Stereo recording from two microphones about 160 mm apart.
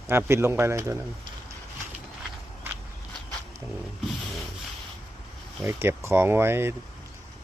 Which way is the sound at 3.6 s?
20° right (ahead or behind).